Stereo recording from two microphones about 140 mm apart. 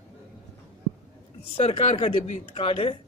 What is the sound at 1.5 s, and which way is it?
Speech, 40° left (ahead or behind).